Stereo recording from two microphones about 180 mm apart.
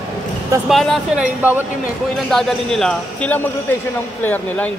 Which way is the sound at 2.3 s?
Centre (ahead or behind).